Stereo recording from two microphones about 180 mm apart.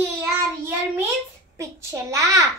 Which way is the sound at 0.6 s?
10° right (ahead or behind).